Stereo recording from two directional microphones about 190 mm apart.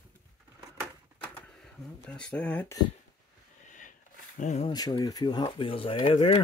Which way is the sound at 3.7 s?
40° left (ahead or behind).